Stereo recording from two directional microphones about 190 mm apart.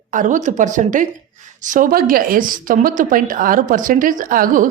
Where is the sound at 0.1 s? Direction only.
40° right (ahead or behind).